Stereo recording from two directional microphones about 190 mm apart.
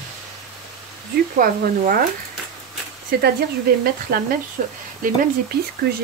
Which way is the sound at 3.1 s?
55° right (ahead or behind).